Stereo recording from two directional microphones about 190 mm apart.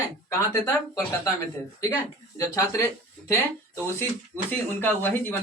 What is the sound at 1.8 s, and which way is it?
Speech, 20° left (ahead or behind).